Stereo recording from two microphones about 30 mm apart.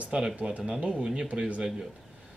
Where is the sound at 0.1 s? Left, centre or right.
Right.